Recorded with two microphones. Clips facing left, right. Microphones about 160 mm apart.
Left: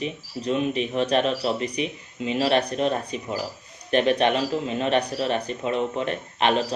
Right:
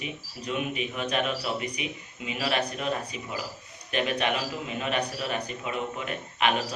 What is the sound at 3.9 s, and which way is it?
Speech, 35° left (ahead or behind).